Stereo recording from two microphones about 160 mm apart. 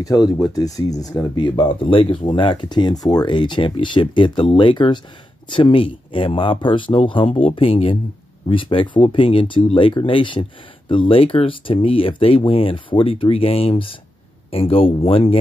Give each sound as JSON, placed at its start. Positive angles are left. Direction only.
{"t": 0.0, "sound": "speech", "side_deg": 25}